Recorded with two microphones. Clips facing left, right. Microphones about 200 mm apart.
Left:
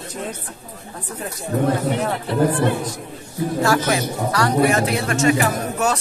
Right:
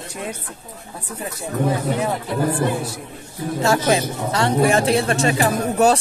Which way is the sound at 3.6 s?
25° right (ahead or behind).